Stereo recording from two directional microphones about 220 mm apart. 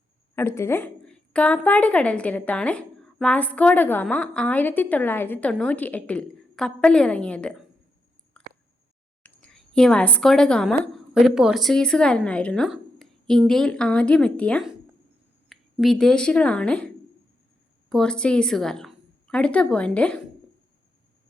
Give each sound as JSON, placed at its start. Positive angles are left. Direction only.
{"t": 0.3, "sound": "a woman's voice", "side_deg": 10}
{"t": 8.4, "sound": "chewing", "side_deg": 5}
{"t": 9.2, "sound": "a woman's voice", "side_deg": 5}